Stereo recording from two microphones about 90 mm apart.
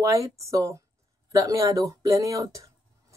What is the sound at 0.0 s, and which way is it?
Speech, 35° right (ahead or behind).